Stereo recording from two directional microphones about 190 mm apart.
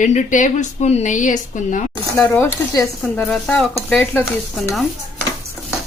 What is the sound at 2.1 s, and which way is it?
Speech, 10° left (ahead or behind).